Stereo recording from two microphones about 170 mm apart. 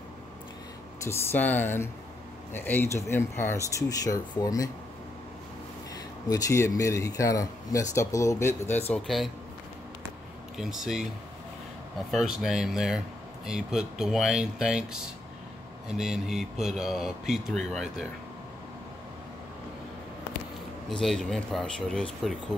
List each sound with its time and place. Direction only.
1.0 s speech: 15° left (ahead or behind)
6.2 s speech: 20° left (ahead or behind)
8.9 s speech: centre (ahead or behind)
10.6 s speech: centre (ahead or behind)
12.1 s speech: centre (ahead or behind)
21.0 s speech: 5° left (ahead or behind)